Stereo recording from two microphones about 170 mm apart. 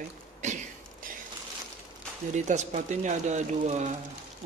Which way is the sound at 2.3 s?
45° right (ahead or behind).